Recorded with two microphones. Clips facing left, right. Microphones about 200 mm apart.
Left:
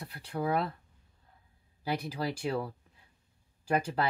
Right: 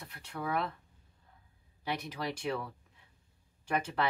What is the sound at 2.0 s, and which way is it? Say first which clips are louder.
Speech: left 3 dB; 30° left (ahead or behind).